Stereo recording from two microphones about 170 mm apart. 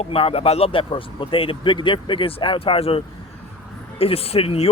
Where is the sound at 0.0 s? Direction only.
35° left (ahead or behind).